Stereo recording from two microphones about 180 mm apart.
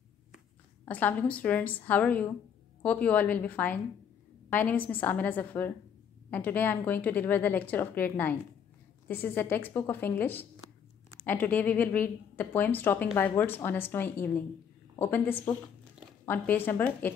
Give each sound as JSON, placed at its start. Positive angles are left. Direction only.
{"t": 0.8, "sound": "a woman's voice", "side_deg": 10}